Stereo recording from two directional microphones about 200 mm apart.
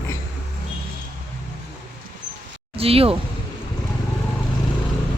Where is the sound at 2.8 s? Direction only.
30° right (ahead or behind).